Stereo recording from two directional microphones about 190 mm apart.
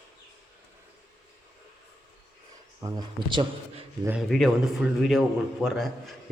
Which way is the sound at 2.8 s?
25° right (ahead or behind).